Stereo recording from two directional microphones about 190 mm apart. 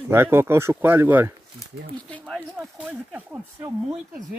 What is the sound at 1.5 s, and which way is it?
Speech, 5° left (ahead or behind).